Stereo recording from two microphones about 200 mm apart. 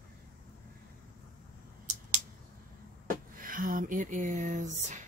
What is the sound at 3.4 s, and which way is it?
Speech, 45° right (ahead or behind).